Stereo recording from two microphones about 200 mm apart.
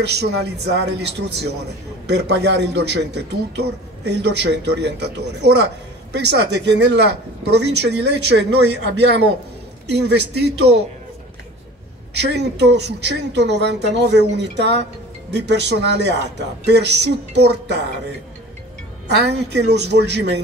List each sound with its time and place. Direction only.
0.0 s a man's voice: 55° right (ahead or behind)
12.1 s a man's voice: 55° right (ahead or behind)
19.0 s a man's voice: 55° right (ahead or behind)